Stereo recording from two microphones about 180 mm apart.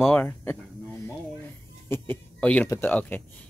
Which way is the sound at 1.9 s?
10° left (ahead or behind).